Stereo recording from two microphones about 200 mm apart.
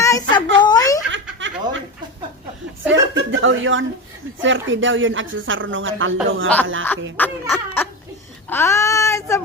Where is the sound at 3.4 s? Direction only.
75° right (ahead or behind).